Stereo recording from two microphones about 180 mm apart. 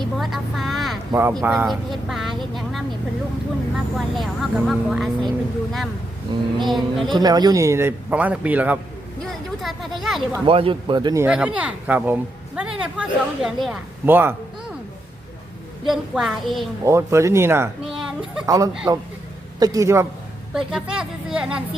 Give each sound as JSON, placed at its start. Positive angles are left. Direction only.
{"t": 0.0, "sound": "vehicle", "side_deg": 0}
{"t": 1.1, "sound": "speech", "side_deg": -15}
{"t": 1.4, "sound": "speech", "side_deg": -5}
{"t": 3.9, "sound": "speech", "side_deg": 0}
{"t": 6.3, "sound": "speech", "side_deg": -25}
{"t": 6.7, "sound": "speech", "side_deg": 0}
{"t": 7.1, "sound": "speech", "side_deg": -20}
{"t": 10.4, "sound": "speech", "side_deg": -30}
{"t": 11.2, "sound": "speech", "side_deg": -5}
{"t": 15.9, "sound": "speech", "side_deg": 0}
{"t": 16.8, "sound": "speech", "side_deg": -15}
{"t": 17.8, "sound": "a sound", "side_deg": -5}
{"t": 18.4, "sound": "speech", "side_deg": -20}
{"t": 20.5, "sound": "speech", "side_deg": -5}